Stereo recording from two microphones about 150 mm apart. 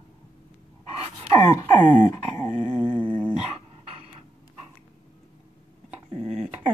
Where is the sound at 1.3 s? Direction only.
20° left (ahead or behind).